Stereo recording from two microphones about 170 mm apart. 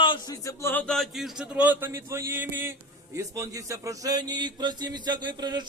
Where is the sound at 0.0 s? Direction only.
25° left (ahead or behind).